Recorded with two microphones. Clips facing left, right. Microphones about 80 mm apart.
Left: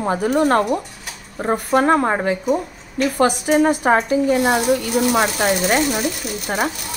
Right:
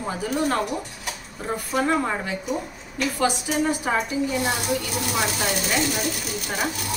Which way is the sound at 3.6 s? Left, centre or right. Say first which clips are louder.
Left 7 dB; left.